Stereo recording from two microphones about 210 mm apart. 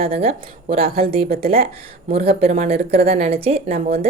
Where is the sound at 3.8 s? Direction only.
40° right (ahead or behind).